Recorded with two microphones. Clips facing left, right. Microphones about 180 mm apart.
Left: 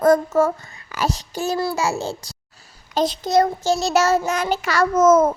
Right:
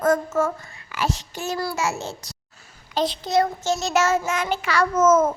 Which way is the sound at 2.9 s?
45° left (ahead or behind).